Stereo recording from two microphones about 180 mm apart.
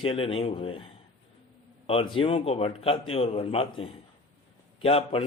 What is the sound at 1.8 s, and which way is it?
Speech, 30° left (ahead or behind).